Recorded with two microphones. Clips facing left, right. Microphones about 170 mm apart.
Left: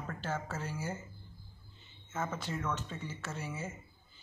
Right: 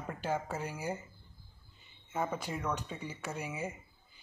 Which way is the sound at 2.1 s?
15° right (ahead or behind).